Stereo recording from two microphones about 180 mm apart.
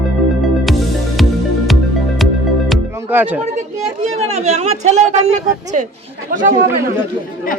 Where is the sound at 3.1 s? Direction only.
10° right (ahead or behind).